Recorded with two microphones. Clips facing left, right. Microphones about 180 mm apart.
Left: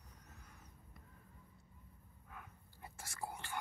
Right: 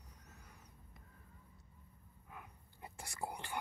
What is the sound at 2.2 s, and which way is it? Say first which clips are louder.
Whispering: right 1 dB; 10° right (ahead or behind).